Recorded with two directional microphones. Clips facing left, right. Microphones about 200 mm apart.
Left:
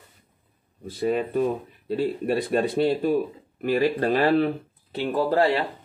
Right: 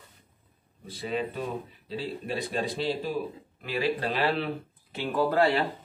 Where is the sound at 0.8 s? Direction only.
50° left (ahead or behind).